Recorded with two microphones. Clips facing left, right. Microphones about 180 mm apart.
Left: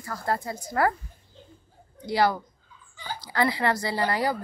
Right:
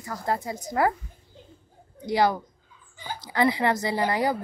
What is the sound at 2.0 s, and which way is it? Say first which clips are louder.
Speech: right 1 dB; 15° right (ahead or behind).